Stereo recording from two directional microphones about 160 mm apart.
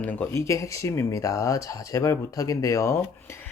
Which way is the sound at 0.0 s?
10° left (ahead or behind).